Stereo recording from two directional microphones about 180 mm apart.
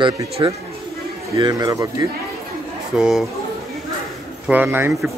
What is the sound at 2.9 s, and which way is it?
Speech, centre (ahead or behind).